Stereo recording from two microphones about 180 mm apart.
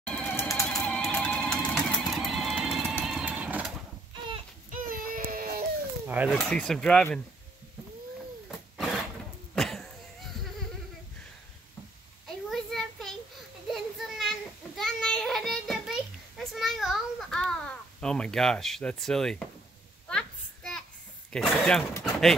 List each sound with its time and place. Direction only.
0.0 s typewriter: 10° left (ahead or behind)
0.7 s music: 5° left (ahead or behind)
3.1 s vehicle: 5° right (ahead or behind)
4.6 s baby cry: 50° right (ahead or behind)
6.0 s speech: 10° right (ahead or behind)
6.5 s speech: 5° left (ahead or behind)
8.5 s a sound: centre (ahead or behind)
12.4 s a sound: centre (ahead or behind)
13.7 s child singing: centre (ahead or behind)
20.1 s a sound: 5° left (ahead or behind)
21.3 s speech: 5° left (ahead or behind)